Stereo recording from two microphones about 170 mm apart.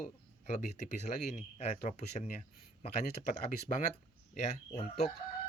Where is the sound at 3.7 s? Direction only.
40° left (ahead or behind).